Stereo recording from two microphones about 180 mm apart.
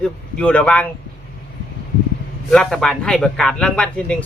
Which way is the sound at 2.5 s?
5° left (ahead or behind).